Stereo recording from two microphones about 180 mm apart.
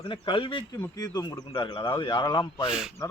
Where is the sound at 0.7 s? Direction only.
15° left (ahead or behind).